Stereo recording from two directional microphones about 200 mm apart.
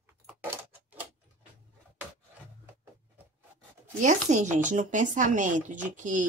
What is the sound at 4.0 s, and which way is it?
A woman's voice, 40° right (ahead or behind).